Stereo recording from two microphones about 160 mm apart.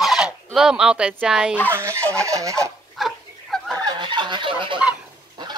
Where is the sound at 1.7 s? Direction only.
15° right (ahead or behind).